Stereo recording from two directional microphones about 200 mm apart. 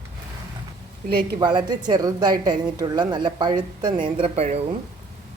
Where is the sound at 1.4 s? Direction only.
20° right (ahead or behind).